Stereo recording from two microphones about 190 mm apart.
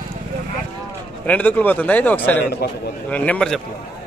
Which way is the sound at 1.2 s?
10° left (ahead or behind).